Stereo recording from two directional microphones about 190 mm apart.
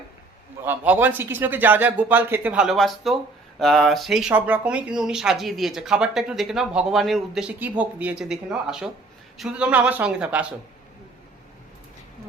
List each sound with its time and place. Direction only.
0.6 s a man's voice: 10° right (ahead or behind)